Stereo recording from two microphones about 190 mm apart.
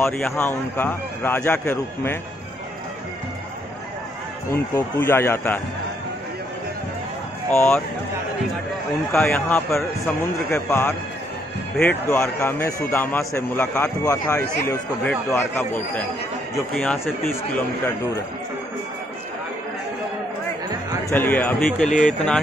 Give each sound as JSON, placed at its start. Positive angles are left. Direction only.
{"t": 0.0, "sound": "a man's voice", "side_deg": 10}
{"t": 4.5, "sound": "a man's voice", "side_deg": 15}
{"t": 7.5, "sound": "a man's voice", "side_deg": 10}
{"t": 9.1, "sound": "a man's voice", "side_deg": 10}
{"t": 21.1, "sound": "a man's voice", "side_deg": 10}
{"t": 21.8, "sound": "speech", "side_deg": 40}